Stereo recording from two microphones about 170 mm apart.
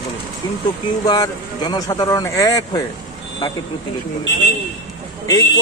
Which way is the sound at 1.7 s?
20° left (ahead or behind).